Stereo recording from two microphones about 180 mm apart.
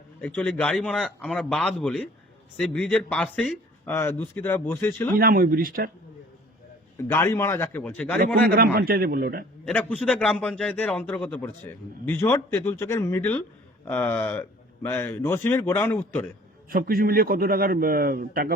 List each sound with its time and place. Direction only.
0.2 s a man's voice: 10° left (ahead or behind)
5.1 s speech: 55° right (ahead or behind)
7.1 s a man's voice: 15° left (ahead or behind)
8.4 s a man's voice: 55° right (ahead or behind)
9.6 s a man's voice: 5° left (ahead or behind)
16.6 s a man's voice: 55° right (ahead or behind)